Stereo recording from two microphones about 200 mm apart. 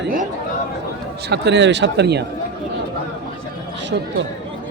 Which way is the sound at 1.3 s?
60° right (ahead or behind).